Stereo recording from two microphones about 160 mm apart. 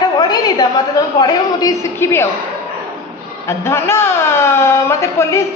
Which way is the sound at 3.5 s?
15° left (ahead or behind).